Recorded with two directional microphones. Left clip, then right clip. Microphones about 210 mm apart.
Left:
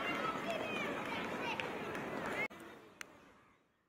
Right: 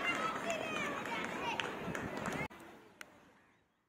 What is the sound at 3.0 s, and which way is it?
Vehicle, 15° left (ahead or behind).